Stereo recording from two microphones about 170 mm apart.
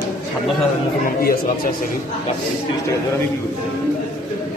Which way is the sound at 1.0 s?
60° left (ahead or behind).